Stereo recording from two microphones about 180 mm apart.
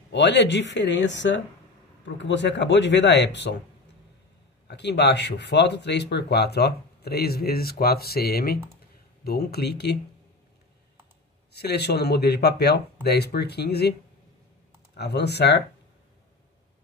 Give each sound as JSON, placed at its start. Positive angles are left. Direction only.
{"t": 0.1, "sound": "speech", "side_deg": 75}
{"t": 4.6, "sound": "speech", "side_deg": 70}
{"t": 11.5, "sound": "speech", "side_deg": 65}
{"t": 15.0, "sound": "speech", "side_deg": 65}